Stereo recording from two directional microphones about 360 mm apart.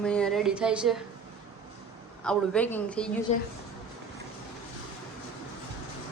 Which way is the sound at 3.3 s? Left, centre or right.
Centre.